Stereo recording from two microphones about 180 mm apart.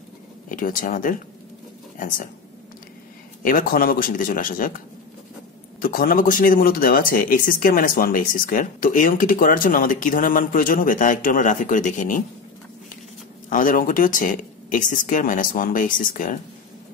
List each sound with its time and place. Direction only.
0.5 s speech: 50° left (ahead or behind)
3.4 s speech: 50° left (ahead or behind)
13.5 s speech: 50° left (ahead or behind)